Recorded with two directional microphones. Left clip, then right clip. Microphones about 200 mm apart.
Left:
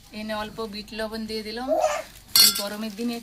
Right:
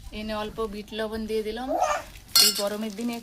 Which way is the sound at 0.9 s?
40° right (ahead or behind).